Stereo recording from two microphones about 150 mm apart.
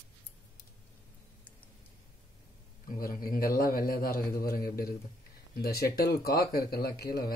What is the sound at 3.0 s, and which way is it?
A man's voice, 75° left (ahead or behind).